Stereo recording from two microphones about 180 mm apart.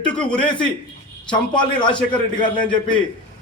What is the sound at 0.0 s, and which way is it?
Speech, 5° left (ahead or behind).